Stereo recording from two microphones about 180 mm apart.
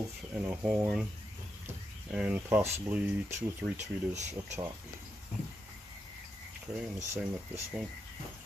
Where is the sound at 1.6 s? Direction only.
5° right (ahead or behind).